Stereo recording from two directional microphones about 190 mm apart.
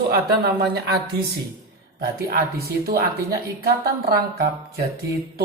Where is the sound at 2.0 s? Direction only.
55° right (ahead or behind).